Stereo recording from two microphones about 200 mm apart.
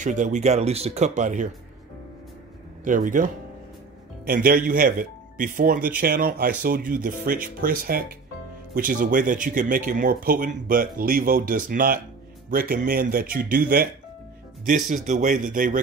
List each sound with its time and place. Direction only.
0.0 s speech: 40° right (ahead or behind)
2.8 s speech: 40° right (ahead or behind)
4.3 s speech: 45° right (ahead or behind)